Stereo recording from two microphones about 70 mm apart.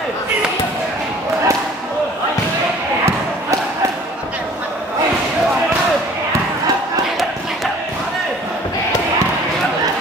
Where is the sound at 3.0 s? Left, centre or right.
Right.